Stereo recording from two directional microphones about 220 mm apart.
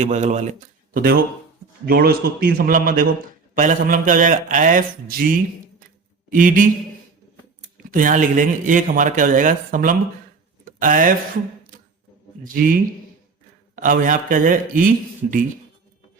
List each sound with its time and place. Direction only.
0.0 s speech: 30° right (ahead or behind)
0.9 s speech: 40° right (ahead or behind)
7.9 s speech: 40° right (ahead or behind)
12.4 s speech: 40° right (ahead or behind)